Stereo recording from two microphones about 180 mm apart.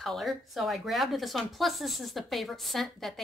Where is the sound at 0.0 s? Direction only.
Centre (ahead or behind).